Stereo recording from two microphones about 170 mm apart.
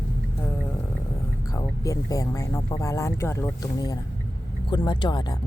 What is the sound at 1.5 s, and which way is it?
Speech, 20° left (ahead or behind).